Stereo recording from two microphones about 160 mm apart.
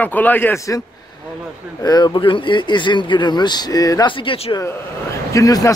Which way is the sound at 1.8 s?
25° left (ahead or behind).